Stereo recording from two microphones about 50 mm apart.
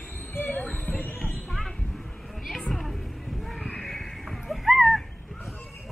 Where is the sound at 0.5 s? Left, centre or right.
Left.